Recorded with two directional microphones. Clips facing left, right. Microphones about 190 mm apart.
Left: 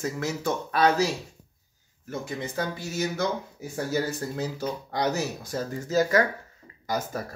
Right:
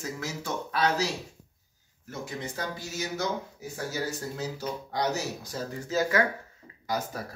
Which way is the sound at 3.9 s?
55° left (ahead or behind).